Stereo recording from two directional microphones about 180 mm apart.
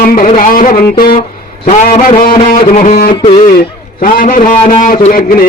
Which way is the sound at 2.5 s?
45° left (ahead or behind).